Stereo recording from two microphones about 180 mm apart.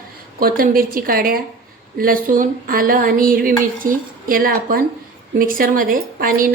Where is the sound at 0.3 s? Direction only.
55° right (ahead or behind).